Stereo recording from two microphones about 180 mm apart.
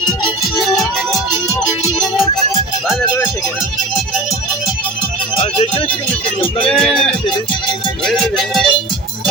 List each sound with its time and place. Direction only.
5.4 s music: 30° left (ahead or behind)
6.7 s music: 5° left (ahead or behind)